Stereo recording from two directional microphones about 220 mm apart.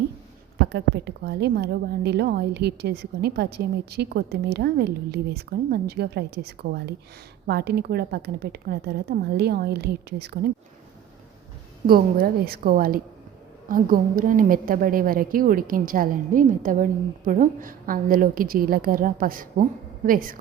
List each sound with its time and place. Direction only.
0.6 s a woman's voice: 50° right (ahead or behind)
11.9 s a woman's voice: 40° right (ahead or behind)